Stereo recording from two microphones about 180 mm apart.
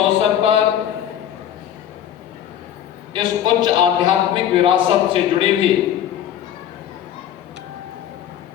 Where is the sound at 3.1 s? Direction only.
25° right (ahead or behind).